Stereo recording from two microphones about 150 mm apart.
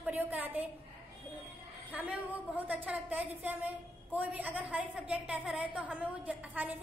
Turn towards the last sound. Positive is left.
turn(degrees=-10)  # may be behind; listen again after turning